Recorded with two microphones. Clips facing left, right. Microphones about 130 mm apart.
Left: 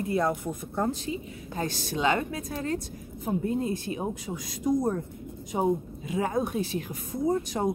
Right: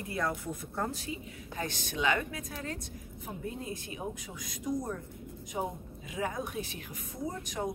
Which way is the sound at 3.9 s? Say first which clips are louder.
Left 8 dB; 40° left (ahead or behind).